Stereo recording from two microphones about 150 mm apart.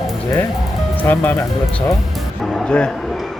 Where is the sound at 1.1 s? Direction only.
15° left (ahead or behind).